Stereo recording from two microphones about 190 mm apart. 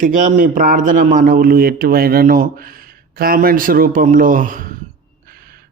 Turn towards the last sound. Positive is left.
turn(degrees=-50)  # may be behind; listen again after turning